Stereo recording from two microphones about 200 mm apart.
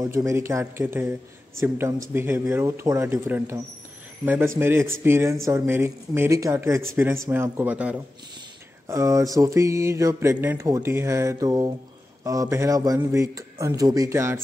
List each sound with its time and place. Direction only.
0.0 s mantra: 15° right (ahead or behind)